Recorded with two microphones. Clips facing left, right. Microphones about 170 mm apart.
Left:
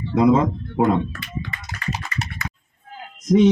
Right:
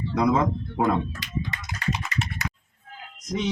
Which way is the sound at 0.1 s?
25° left (ahead or behind).